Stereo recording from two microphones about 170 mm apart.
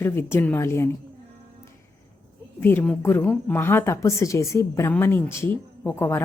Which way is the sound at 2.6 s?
10° left (ahead or behind).